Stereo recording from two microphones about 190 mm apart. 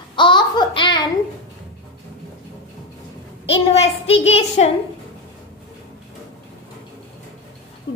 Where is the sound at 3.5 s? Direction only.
35° left (ahead or behind).